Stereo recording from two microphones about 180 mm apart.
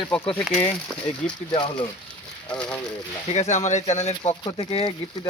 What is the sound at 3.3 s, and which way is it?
Speech, 40° left (ahead or behind).